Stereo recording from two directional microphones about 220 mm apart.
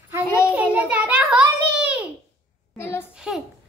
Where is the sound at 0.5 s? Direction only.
5° right (ahead or behind).